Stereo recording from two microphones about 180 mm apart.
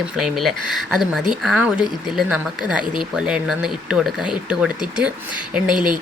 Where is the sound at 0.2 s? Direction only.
Centre (ahead or behind).